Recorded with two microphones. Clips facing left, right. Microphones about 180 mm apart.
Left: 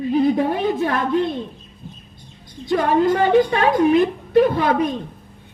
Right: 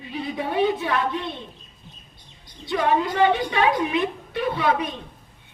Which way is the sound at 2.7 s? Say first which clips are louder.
Left 5 dB; 45° left (ahead or behind).